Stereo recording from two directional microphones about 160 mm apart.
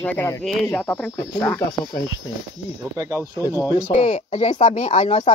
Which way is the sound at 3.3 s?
20° left (ahead or behind).